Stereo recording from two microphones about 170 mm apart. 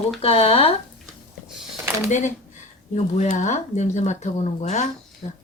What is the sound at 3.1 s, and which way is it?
Speech, 45° left (ahead or behind).